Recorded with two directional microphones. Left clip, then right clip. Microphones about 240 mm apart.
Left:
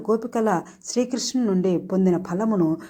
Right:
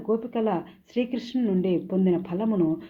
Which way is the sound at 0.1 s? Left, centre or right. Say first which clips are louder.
Left 4 dB; left.